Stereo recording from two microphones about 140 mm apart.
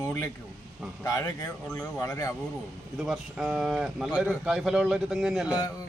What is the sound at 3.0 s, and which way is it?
Speech, centre (ahead or behind).